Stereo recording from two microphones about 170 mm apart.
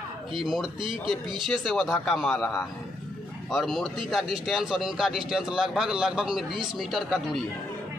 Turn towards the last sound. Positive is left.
turn(degrees=0)  # may be behind; listen again after turning